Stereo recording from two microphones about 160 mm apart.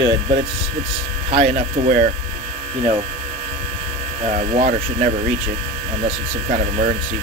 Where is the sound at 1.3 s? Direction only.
55° right (ahead or behind).